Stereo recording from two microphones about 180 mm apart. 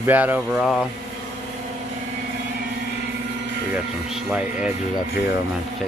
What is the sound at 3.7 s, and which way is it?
Speech, 5° right (ahead or behind).